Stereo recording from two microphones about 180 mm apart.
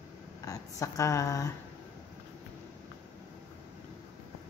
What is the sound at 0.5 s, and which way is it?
Speech, 20° left (ahead or behind).